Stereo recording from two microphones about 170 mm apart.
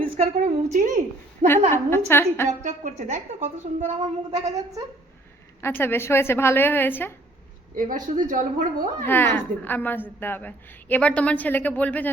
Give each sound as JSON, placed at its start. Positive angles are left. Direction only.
{"t": 0.0, "sound": "a woman's voice", "side_deg": -40}
{"t": 1.7, "sound": "a woman's voice", "side_deg": 15}
{"t": 2.6, "sound": "a woman's voice", "side_deg": -45}
{"t": 4.3, "sound": "speech", "side_deg": -20}
{"t": 5.6, "sound": "a woman's voice", "side_deg": 15}
{"t": 7.8, "sound": "a woman's voice", "side_deg": -50}
{"t": 9.0, "sound": "a woman's voice", "side_deg": 10}